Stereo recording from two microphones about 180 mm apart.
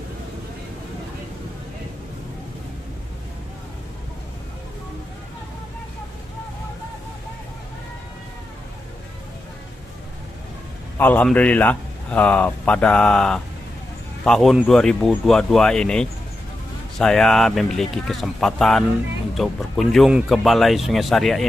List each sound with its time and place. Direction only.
11.0 s speech: 10° left (ahead or behind)